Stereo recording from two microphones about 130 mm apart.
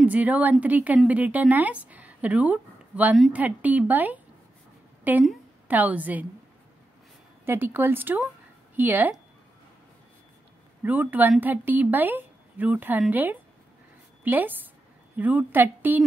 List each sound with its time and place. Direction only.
0.0 s a woman's voice: 10° right (ahead or behind)
7.4 s a woman's voice: 15° right (ahead or behind)
10.8 s a woman's voice: 15° right (ahead or behind)